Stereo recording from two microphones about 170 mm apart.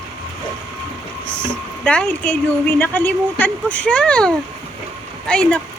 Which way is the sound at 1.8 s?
5° left (ahead or behind).